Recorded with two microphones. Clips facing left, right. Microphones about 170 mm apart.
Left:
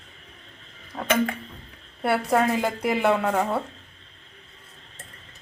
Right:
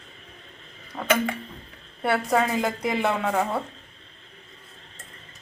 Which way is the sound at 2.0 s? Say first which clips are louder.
Left 1 dB; 5° left (ahead or behind).